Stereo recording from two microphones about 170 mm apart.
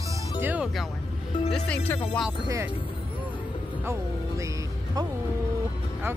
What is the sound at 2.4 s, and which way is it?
Speech, 20° right (ahead or behind).